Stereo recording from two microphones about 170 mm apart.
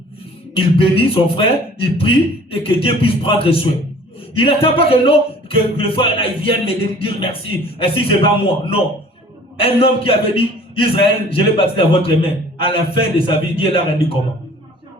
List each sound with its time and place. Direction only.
0.5 s a man's voice: 35° left (ahead or behind)